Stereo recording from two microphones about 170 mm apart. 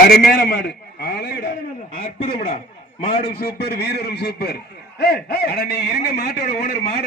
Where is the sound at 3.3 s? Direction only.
65° left (ahead or behind).